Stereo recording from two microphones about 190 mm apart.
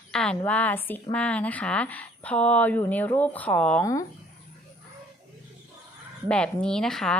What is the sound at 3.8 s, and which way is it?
Speech, 15° left (ahead or behind).